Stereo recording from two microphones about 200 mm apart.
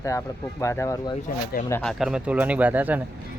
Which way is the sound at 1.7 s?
5° left (ahead or behind).